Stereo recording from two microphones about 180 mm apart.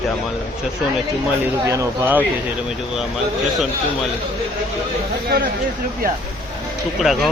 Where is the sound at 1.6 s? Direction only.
15° right (ahead or behind).